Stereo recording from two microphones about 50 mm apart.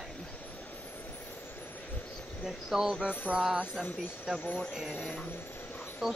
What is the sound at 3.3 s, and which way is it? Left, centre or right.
Speech, right.